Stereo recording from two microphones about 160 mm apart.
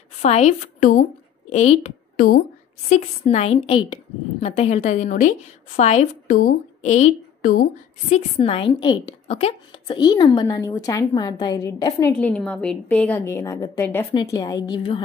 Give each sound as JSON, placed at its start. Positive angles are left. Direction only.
{"t": 0.2, "sound": "a woman's voice", "side_deg": 45}
{"t": 0.7, "sound": "a woman's voice", "side_deg": 60}
{"t": 1.5, "sound": "a woman's voice", "side_deg": 45}
{"t": 2.1, "sound": "speech", "side_deg": 60}
{"t": 2.9, "sound": "a woman's voice", "side_deg": 45}
{"t": 8.1, "sound": "a woman's voice", "side_deg": 35}
{"t": 9.3, "sound": "a woman's voice", "side_deg": 40}
{"t": 12.2, "sound": "a woman's voice", "side_deg": 5}